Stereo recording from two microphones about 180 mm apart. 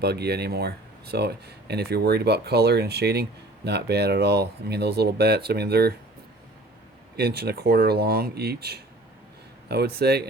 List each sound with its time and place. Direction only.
0.0 s speech: 65° right (ahead or behind)
7.2 s speech: 60° right (ahead or behind)